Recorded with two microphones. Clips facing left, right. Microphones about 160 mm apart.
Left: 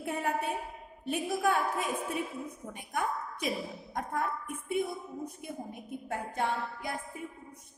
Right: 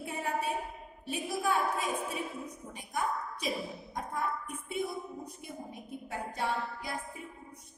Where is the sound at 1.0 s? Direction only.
60° left (ahead or behind).